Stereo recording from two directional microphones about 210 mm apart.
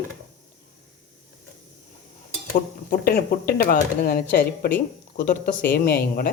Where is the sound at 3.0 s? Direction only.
45° left (ahead or behind).